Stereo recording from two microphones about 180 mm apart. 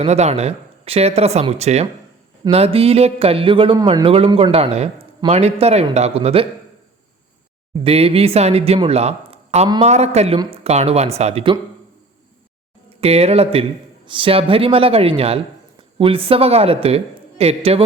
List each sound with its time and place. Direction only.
0.0 s speech: 35° right (ahead or behind)
7.9 s speech: 35° right (ahead or behind)
13.0 s speech: 35° right (ahead or behind)